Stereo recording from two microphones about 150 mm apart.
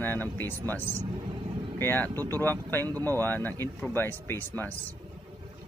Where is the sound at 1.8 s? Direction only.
15° left (ahead or behind).